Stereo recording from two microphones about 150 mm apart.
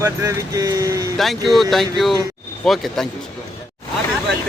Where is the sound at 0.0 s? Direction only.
20° right (ahead or behind).